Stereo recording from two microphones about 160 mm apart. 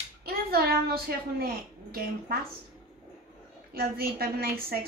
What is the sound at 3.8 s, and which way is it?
Speech, 70° right (ahead or behind).